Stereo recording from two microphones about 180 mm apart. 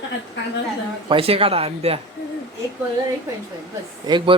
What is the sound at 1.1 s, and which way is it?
Speech, 30° right (ahead or behind).